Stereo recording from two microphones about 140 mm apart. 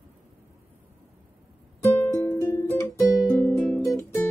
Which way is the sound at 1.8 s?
20° left (ahead or behind).